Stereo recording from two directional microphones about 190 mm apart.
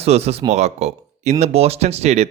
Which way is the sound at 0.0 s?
35° right (ahead or behind).